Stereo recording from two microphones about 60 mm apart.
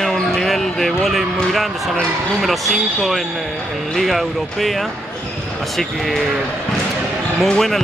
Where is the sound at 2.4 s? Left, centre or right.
Centre.